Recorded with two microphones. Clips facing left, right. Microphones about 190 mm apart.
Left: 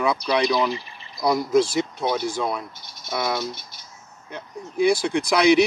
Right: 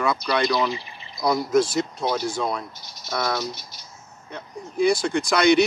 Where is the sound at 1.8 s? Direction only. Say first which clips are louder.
Left 1 dB; 5° left (ahead or behind).